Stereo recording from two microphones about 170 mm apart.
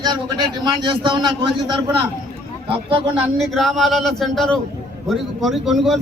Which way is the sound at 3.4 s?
Centre (ahead or behind).